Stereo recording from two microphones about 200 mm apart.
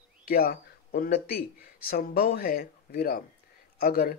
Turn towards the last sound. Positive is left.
turn(degrees=50)  # may be behind; listen again after turning